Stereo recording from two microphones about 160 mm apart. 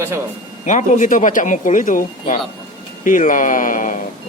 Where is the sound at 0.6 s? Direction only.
50° left (ahead or behind).